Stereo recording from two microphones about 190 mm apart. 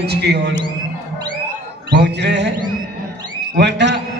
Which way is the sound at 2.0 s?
65° right (ahead or behind).